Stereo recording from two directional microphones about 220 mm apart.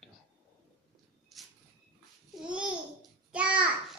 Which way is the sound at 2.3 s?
5° right (ahead or behind).